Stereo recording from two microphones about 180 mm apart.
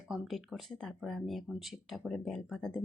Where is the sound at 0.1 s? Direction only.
Centre (ahead or behind).